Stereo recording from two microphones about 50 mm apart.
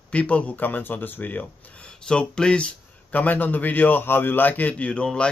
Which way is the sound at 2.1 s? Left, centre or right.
Centre.